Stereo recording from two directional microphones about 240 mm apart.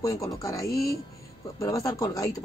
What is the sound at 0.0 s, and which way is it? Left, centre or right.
Speech, centre.